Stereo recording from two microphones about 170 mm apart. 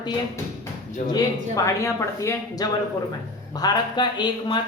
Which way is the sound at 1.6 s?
20° left (ahead or behind).